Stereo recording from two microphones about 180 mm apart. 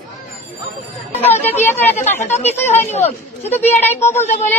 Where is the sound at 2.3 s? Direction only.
35° left (ahead or behind).